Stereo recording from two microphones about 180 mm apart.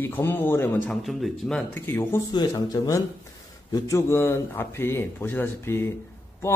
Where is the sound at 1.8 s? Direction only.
15° left (ahead or behind).